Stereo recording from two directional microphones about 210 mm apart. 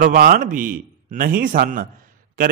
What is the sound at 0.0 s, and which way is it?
A man's voice, 40° right (ahead or behind).